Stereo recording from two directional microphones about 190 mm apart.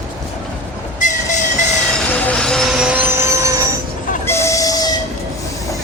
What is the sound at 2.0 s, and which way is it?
Train, 5° left (ahead or behind).